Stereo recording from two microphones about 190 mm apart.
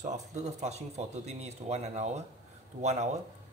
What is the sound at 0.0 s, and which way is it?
Speech, 40° right (ahead or behind).